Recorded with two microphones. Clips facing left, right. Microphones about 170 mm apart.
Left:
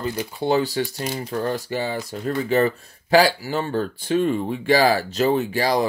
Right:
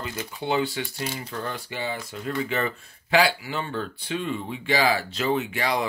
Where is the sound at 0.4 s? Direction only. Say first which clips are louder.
Left 5 dB; 40° left (ahead or behind).